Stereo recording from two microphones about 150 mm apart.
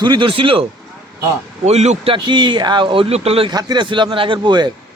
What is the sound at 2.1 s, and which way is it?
Speech, 30° right (ahead or behind).